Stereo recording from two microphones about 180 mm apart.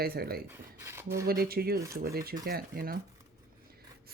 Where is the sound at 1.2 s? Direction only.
60° right (ahead or behind).